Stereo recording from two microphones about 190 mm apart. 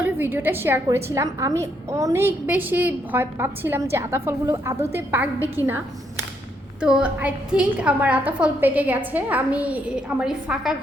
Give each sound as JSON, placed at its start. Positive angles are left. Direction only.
{"t": 0.0, "sound": "a woman's voice", "side_deg": -10}
{"t": 5.6, "sound": "a woman's voice", "side_deg": 15}
{"t": 6.8, "sound": "a woman's voice", "side_deg": -5}